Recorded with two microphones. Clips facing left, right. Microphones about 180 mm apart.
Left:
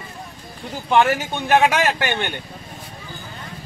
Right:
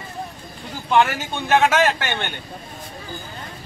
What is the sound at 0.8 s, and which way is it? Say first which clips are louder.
A man's voice: left 1 dB; 15° left (ahead or behind).